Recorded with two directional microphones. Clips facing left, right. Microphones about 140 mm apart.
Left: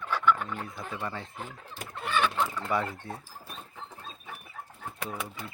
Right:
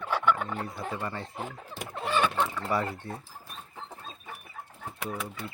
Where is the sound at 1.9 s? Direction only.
30° right (ahead or behind).